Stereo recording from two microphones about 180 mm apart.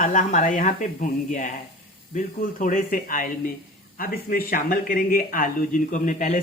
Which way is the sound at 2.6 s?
45° left (ahead or behind).